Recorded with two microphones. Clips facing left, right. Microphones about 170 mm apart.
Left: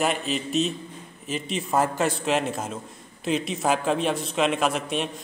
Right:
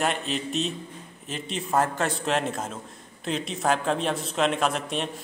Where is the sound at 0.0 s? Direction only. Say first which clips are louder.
Left 2 dB; 5° left (ahead or behind).